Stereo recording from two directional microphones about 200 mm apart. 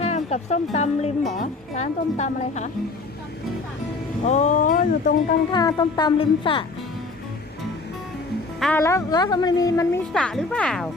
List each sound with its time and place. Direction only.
0.0 s speech: 35° left (ahead or behind)
4.2 s speech: 35° left (ahead or behind)
5.5 s speech: 20° left (ahead or behind)
8.5 s music: centre (ahead or behind)
8.8 s a woman's voice: 15° left (ahead or behind)
10.1 s speech: 5° left (ahead or behind)